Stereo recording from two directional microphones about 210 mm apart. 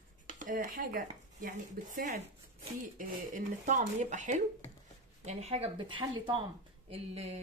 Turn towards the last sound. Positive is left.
turn(degrees=-30)  # may be behind; listen again after turning